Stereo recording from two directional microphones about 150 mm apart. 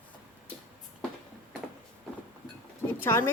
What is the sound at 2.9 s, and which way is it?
Speech, 15° left (ahead or behind).